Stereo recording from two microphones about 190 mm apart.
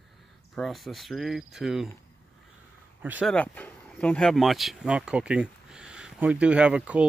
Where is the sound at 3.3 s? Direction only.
5° left (ahead or behind).